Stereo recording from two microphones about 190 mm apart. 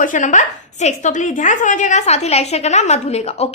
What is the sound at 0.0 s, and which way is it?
A woman's voice, 40° left (ahead or behind).